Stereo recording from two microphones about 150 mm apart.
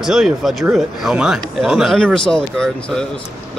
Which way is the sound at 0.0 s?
Centre (ahead or behind).